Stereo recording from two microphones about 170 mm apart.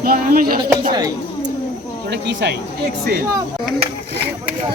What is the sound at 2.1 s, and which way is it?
Speech, 90° right.